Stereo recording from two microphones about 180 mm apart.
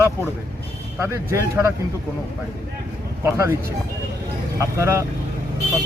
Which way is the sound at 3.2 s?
15° right (ahead or behind).